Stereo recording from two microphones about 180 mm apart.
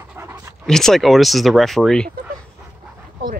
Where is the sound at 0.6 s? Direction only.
Centre (ahead or behind).